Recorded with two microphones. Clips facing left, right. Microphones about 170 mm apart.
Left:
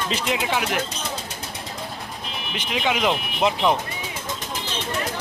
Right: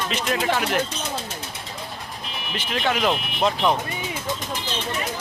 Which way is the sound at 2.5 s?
10° left (ahead or behind).